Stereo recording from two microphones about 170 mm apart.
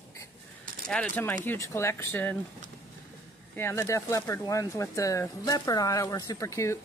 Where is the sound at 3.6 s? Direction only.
15° left (ahead or behind).